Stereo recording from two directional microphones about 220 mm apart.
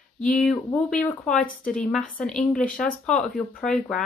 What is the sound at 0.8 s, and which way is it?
Speech, 5° left (ahead or behind).